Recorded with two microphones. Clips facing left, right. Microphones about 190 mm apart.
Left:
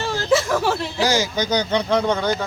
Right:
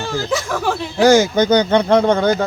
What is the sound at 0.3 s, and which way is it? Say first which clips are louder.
Speech: left 4 dB; 5° left (ahead or behind).